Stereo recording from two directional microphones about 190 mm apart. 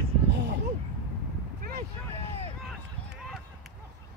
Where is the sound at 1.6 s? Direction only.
55° right (ahead or behind).